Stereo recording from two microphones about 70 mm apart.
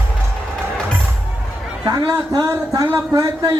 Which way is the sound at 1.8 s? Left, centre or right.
Right.